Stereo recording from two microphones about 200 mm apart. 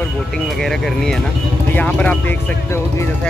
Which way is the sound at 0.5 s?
Centre (ahead or behind).